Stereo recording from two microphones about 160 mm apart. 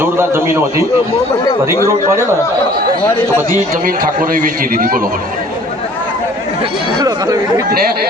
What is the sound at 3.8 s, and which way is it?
A man's voice, 60° right (ahead or behind).